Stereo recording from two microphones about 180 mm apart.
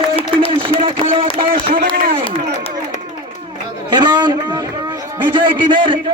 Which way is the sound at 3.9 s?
25° right (ahead or behind).